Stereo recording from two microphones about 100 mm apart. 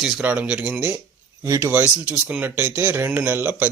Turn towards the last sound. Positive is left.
turn(degrees=-15)  # may be behind; listen again after turning